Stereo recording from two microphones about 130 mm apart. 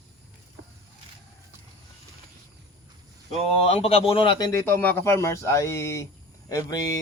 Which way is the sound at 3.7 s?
50° left (ahead or behind).